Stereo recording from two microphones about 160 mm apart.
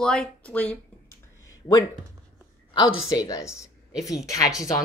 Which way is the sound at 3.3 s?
20° left (ahead or behind).